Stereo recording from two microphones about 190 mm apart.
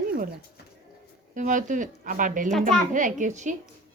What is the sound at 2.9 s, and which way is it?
Speech, 40° right (ahead or behind).